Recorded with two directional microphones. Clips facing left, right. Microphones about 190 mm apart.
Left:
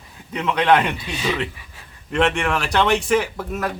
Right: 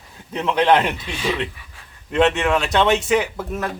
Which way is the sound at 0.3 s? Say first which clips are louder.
Right 1 dB; 25° right (ahead or behind).